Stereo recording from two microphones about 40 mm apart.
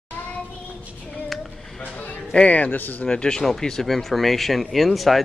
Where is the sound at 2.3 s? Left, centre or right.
Left.